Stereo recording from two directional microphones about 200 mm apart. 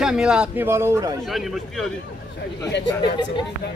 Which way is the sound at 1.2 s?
Centre (ahead or behind).